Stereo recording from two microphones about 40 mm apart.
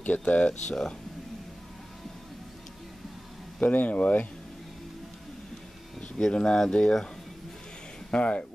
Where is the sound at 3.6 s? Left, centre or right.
Left.